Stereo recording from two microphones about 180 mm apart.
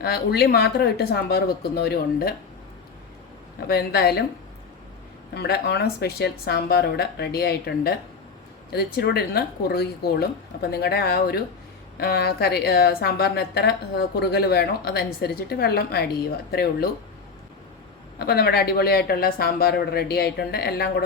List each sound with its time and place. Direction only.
0.0 s speech: 65° left (ahead or behind)
3.7 s speech: 60° left (ahead or behind)
5.3 s speech: 65° left (ahead or behind)
18.2 s speech: 60° left (ahead or behind)